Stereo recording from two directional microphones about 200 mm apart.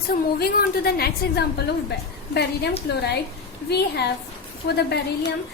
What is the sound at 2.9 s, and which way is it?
Speech, 55° left (ahead or behind).